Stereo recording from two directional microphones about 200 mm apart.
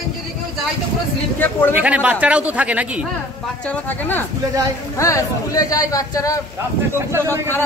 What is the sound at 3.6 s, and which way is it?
Speech, 10° left (ahead or behind).